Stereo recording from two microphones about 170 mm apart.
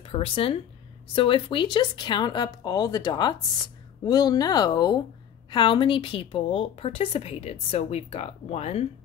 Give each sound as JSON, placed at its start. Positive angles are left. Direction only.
{"t": 0.0, "sound": "a woman's voice", "side_deg": 30}